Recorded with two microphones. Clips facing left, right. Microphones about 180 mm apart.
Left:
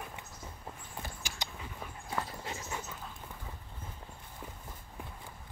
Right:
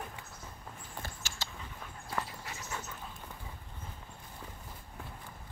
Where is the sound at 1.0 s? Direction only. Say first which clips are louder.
Left 2 dB; 15° left (ahead or behind).